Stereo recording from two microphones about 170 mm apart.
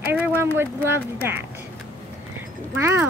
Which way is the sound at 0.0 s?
10° right (ahead or behind).